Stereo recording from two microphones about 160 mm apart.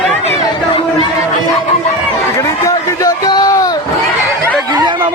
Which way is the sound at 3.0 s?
25° left (ahead or behind).